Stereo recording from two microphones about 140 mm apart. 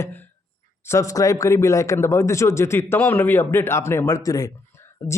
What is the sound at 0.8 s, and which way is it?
A man's voice, 20° left (ahead or behind).